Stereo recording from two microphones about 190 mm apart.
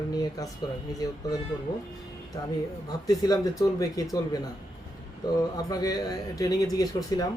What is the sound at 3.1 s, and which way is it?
Speech, 20° left (ahead or behind).